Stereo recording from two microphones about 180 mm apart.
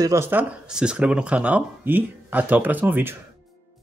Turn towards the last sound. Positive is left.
turn(degrees=-10)  # may be behind; listen again after turning